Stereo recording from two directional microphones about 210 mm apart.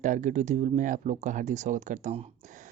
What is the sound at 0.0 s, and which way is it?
Speech, 35° right (ahead or behind).